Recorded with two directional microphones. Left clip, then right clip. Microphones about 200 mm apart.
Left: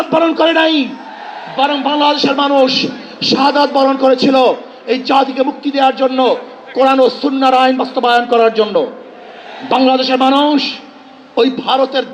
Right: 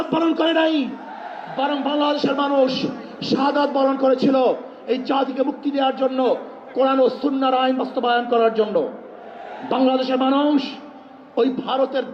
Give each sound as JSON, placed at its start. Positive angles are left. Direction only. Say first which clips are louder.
{"t": 0.1, "sound": "a man's voice", "louder": "left 8 dB", "side_deg": 25}